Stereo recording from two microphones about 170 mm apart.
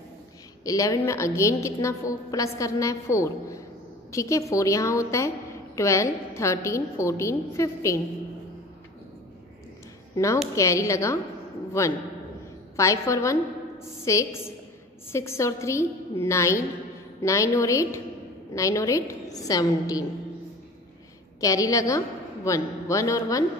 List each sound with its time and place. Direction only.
0.7 s a woman's voice: 20° left (ahead or behind)
10.1 s a woman's voice: 20° left (ahead or behind)
21.4 s a woman's voice: 20° left (ahead or behind)